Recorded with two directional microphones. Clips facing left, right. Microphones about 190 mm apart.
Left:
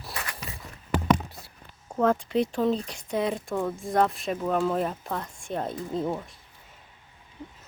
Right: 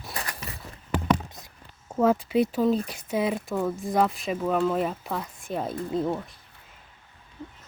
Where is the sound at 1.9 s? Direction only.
5° right (ahead or behind).